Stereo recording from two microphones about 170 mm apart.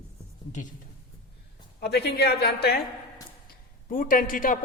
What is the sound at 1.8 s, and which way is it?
A woman's voice, 70° left (ahead or behind).